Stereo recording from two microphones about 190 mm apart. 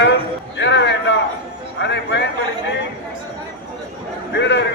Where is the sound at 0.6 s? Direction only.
65° left (ahead or behind).